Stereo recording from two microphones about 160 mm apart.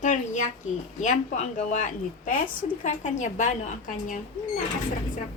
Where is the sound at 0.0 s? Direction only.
50° left (ahead or behind).